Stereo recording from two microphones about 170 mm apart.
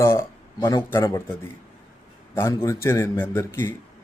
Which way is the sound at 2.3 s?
15° left (ahead or behind).